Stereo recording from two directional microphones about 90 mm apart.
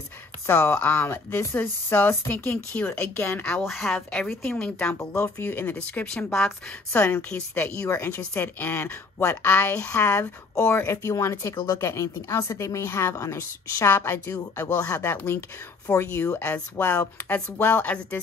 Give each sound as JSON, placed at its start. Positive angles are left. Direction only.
{"t": 0.5, "sound": "speech", "side_deg": 30}
{"t": 2.9, "sound": "speech", "side_deg": 30}
{"t": 3.4, "sound": "speech", "side_deg": 5}
{"t": 4.1, "sound": "a woman's voice", "side_deg": 10}
{"t": 4.9, "sound": "speech", "side_deg": 25}
{"t": 5.8, "sound": "a woman's voice", "side_deg": 15}
{"t": 7.7, "sound": "a woman's voice", "side_deg": 35}